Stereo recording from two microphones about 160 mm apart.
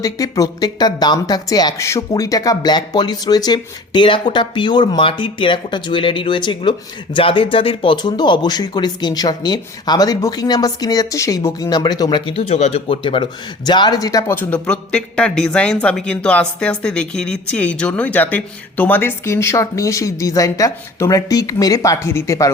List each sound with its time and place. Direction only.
0.0 s a man's voice: 20° left (ahead or behind)